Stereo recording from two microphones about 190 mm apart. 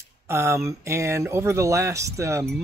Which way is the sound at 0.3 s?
15° right (ahead or behind).